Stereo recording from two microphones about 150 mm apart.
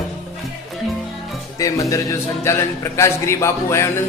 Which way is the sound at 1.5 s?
20° left (ahead or behind).